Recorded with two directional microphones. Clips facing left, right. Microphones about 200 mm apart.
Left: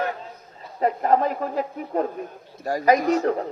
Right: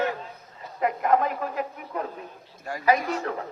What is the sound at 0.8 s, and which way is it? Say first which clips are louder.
A man's voice: left 3 dB; 35° left (ahead or behind).